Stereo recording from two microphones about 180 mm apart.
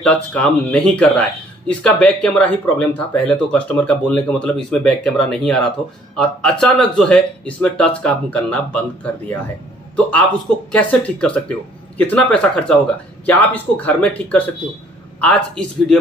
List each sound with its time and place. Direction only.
0.0 s a man's voice: 10° left (ahead or behind)